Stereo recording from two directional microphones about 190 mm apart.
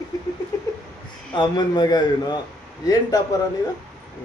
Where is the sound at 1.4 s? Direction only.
20° left (ahead or behind).